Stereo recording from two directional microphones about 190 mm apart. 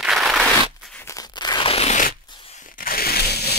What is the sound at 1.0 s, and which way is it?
Crunch, 20° left (ahead or behind).